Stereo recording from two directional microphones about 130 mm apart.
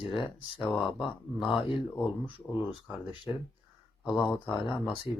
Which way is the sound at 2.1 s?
40° left (ahead or behind).